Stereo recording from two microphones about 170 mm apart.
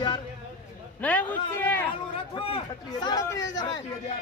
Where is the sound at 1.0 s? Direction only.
10° left (ahead or behind).